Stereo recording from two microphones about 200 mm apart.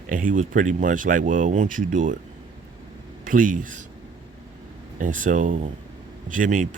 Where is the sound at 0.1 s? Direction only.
40° right (ahead or behind).